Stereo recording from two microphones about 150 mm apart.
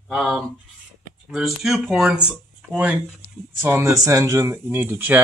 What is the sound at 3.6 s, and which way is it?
Speech, 20° right (ahead or behind).